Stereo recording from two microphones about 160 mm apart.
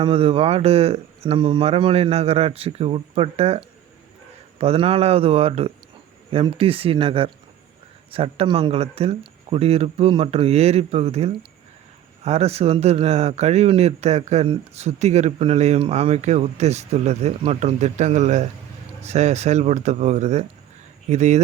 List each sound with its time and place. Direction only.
0.0 s speech: 35° right (ahead or behind)